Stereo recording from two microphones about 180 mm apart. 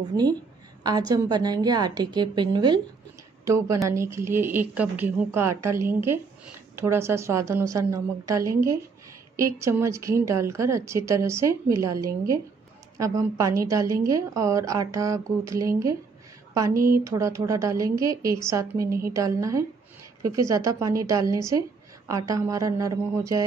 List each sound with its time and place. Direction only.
0.8 s a woman's voice: 20° right (ahead or behind)
16.7 s speech: 50° right (ahead or behind)
17.0 s a woman's voice: 15° right (ahead or behind)